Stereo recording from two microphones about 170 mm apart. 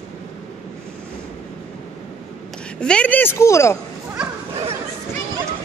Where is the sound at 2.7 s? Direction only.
5° left (ahead or behind).